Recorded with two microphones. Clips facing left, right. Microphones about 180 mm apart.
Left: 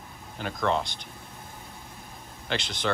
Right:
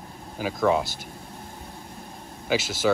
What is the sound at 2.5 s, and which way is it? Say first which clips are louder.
Speech: right 6 dB; 5° right (ahead or behind).